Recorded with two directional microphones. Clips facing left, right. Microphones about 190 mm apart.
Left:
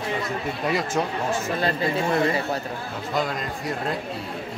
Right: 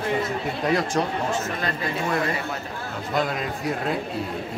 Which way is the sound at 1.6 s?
30° left (ahead or behind).